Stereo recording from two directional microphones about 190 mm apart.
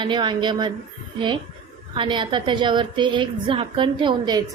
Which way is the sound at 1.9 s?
25° right (ahead or behind).